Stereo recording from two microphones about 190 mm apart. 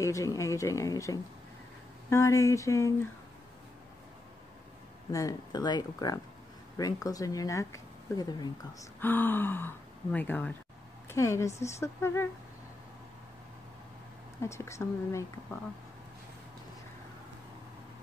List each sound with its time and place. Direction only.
0.0 s speech: 15° left (ahead or behind)
5.1 s speech: 20° left (ahead or behind)
9.0 s speech: 10° left (ahead or behind)
14.4 s speech: 15° left (ahead or behind)